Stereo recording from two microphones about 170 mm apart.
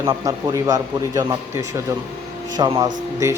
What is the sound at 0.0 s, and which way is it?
Speech, 20° right (ahead or behind).